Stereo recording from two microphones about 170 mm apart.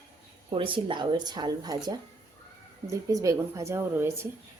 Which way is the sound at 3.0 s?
20° right (ahead or behind).